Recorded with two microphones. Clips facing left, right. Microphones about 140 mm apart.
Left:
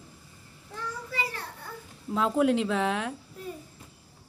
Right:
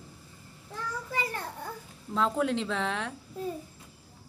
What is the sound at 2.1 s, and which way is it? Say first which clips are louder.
Speech: left 4 dB; 10° left (ahead or behind).